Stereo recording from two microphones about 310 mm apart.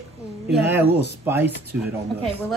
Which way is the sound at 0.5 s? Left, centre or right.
Centre.